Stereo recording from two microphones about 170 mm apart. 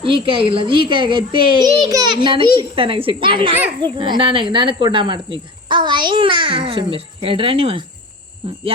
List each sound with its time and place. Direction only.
0.0 s a child's voice: 30° right (ahead or behind)